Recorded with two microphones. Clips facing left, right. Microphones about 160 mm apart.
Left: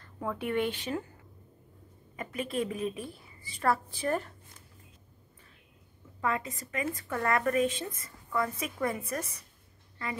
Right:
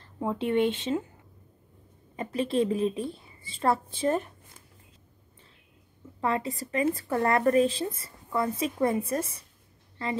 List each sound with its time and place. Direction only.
0.0 s speech: 25° right (ahead or behind)
2.1 s a woman's voice: 30° right (ahead or behind)
6.2 s a woman's voice: 30° right (ahead or behind)